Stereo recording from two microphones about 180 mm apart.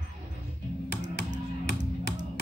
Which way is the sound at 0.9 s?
70° right (ahead or behind).